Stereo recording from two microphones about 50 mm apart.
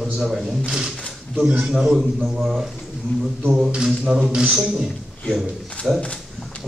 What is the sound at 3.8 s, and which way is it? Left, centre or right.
Speech, centre.